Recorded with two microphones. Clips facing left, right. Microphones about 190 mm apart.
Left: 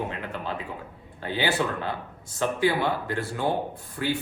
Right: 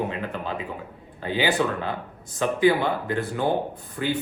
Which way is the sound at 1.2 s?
15° right (ahead or behind).